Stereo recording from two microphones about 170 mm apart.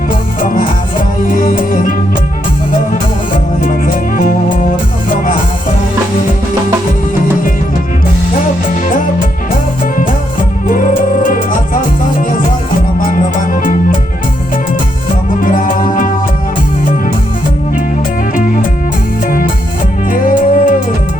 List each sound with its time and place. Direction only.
1.3 s music: 50° left (ahead or behind)
3.6 s music: 55° left (ahead or behind)
10.7 s music: 50° left (ahead or behind)
13.0 s music: 50° left (ahead or behind)
15.4 s music: 50° left (ahead or behind)
20.1 s music: 55° left (ahead or behind)